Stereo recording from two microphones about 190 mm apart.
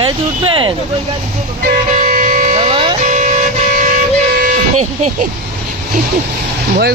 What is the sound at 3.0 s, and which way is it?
Vehicle, 40° right (ahead or behind).